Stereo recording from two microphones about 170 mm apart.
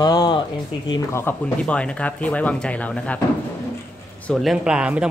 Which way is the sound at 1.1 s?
10° left (ahead or behind).